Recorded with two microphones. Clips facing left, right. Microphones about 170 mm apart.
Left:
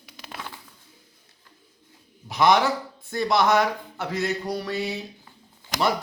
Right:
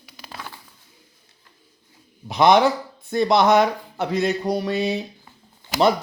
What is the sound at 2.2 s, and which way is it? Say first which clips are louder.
Speech: right 4 dB; 20° right (ahead or behind).